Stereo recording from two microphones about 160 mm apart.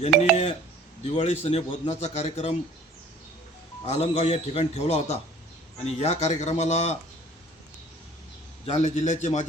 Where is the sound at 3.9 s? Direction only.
40° left (ahead or behind).